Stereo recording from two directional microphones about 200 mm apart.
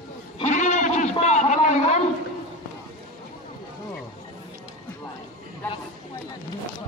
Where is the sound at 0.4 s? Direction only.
35° left (ahead or behind).